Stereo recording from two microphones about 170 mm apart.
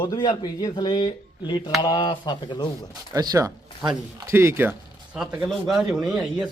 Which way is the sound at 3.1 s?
20° right (ahead or behind).